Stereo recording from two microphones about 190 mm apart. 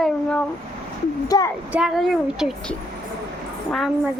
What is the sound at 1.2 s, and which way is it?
Speech, 20° left (ahead or behind).